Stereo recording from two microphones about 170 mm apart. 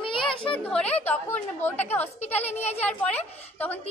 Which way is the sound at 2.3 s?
40° left (ahead or behind).